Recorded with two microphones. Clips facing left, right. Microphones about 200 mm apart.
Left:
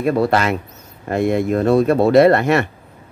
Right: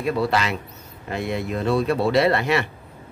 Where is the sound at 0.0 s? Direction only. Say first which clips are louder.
Left 6 dB; 50° left (ahead or behind).